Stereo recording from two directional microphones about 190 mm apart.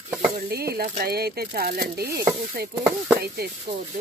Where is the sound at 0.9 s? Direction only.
50° right (ahead or behind).